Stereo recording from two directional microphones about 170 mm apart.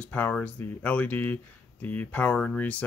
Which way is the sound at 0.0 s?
10° left (ahead or behind).